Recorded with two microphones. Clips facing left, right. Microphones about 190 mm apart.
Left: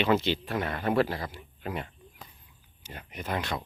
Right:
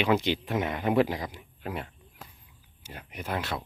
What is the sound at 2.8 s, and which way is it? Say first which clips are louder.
Speech: even; 10° right (ahead or behind).